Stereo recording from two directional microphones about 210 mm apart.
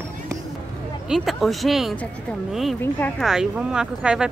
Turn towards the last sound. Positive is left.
turn(degrees=-5)  # may be behind; listen again after turning